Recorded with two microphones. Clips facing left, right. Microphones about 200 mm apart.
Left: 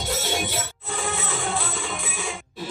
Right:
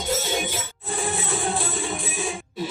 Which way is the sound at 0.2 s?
70° left (ahead or behind).